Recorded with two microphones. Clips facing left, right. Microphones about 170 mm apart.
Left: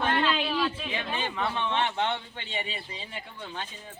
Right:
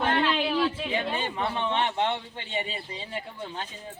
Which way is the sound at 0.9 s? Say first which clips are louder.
Right 3 dB; 35° right (ahead or behind).